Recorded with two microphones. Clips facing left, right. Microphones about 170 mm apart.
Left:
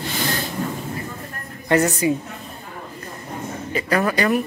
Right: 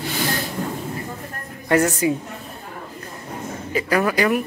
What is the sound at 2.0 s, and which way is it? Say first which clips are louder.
Speech: even; centre (ahead or behind).